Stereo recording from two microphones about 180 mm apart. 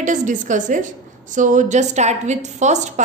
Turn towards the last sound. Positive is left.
turn(degrees=-40)  # may be behind; listen again after turning